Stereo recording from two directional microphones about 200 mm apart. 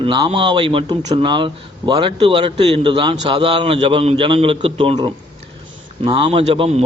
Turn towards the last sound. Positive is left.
turn(degrees=-30)  # may be behind; listen again after turning